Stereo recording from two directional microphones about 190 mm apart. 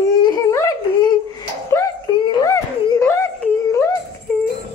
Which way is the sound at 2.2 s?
20° left (ahead or behind).